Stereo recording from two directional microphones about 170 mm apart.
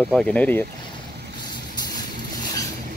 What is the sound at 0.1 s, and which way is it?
Speech, 5° left (ahead or behind).